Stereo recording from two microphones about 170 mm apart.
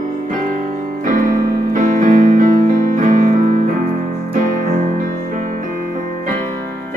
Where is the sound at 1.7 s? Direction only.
50° right (ahead or behind).